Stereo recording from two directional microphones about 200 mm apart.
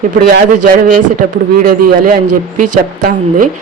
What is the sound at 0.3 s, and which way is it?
Speech, 50° right (ahead or behind).